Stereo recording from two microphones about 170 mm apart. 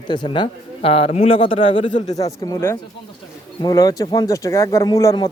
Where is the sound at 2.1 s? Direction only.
20° left (ahead or behind).